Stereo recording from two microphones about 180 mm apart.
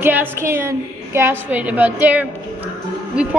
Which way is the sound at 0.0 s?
10° right (ahead or behind).